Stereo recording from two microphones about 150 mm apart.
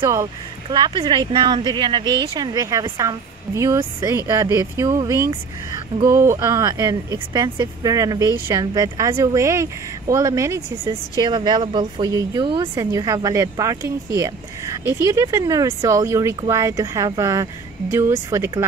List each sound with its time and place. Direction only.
0.0 s speech: 20° right (ahead or behind)